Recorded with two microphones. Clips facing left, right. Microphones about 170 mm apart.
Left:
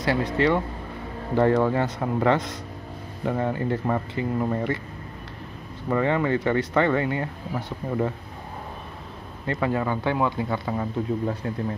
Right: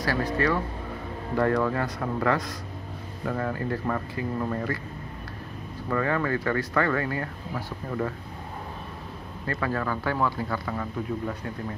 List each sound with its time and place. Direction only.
0.0 s speech: 25° left (ahead or behind)
5.9 s speech: 20° left (ahead or behind)
9.5 s speech: 20° left (ahead or behind)